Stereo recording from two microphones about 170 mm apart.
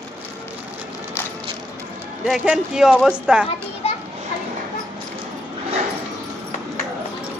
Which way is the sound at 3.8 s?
35° left (ahead or behind).